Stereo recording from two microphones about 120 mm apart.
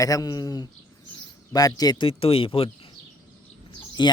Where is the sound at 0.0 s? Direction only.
30° left (ahead or behind).